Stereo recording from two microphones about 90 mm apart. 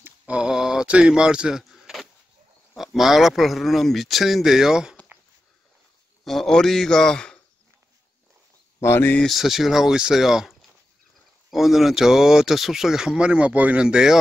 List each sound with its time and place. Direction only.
0.3 s a sound: 10° right (ahead or behind)
2.7 s speech: centre (ahead or behind)
6.2 s speech: 5° left (ahead or behind)
8.8 s speech: 25° left (ahead or behind)
9.2 s speech: centre (ahead or behind)